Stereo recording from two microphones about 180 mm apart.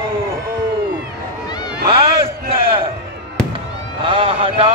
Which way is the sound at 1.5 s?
25° left (ahead or behind).